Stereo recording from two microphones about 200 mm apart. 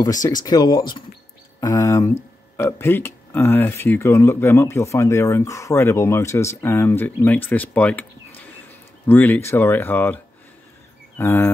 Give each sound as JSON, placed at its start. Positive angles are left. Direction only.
{"t": 0.0, "sound": "speech", "side_deg": 20}